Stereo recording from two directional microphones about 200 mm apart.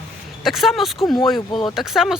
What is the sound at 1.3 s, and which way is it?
Speech, 25° left (ahead or behind).